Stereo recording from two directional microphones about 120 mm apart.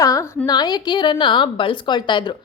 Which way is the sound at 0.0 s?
25° left (ahead or behind).